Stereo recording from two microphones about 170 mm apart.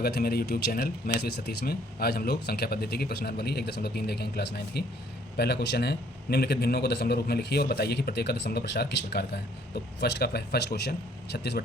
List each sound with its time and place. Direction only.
0.0 s a man's voice: 65° left (ahead or behind)